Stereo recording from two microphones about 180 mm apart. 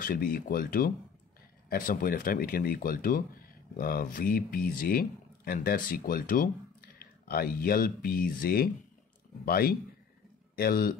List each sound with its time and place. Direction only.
0.0 s a man's voice: 55° left (ahead or behind)